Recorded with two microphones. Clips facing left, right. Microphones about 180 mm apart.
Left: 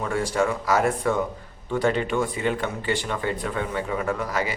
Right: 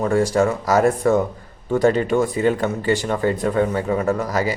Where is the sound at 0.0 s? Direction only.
40° right (ahead or behind).